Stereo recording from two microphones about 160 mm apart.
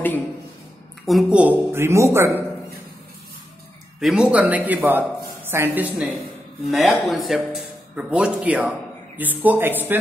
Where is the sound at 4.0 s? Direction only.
5° right (ahead or behind).